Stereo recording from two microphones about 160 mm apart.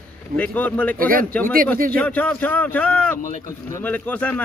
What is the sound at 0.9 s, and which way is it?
Speech, 60° right (ahead or behind).